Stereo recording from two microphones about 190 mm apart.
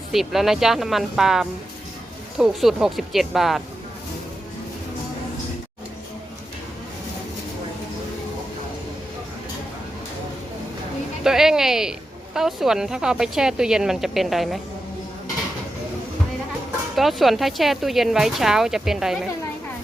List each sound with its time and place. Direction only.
0.1 s a woman's voice: centre (ahead or behind)
11.2 s a woman's voice: 5° right (ahead or behind)
16.9 s a woman's voice: centre (ahead or behind)